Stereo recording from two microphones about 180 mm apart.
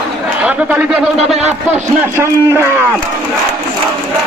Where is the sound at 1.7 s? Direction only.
15° right (ahead or behind).